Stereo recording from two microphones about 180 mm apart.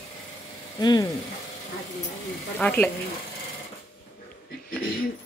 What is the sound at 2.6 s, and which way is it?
Speech, 10° left (ahead or behind).